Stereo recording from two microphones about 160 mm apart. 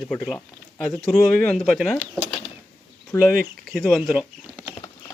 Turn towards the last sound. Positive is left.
turn(degrees=-5)  # may be behind; listen again after turning